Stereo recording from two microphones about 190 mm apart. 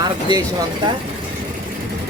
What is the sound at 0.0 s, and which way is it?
Speech, 20° right (ahead or behind).